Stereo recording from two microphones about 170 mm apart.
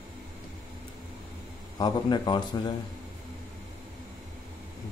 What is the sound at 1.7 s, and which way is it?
Speech, 25° left (ahead or behind).